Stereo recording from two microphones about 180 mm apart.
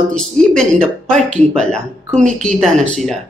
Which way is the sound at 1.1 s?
40° right (ahead or behind).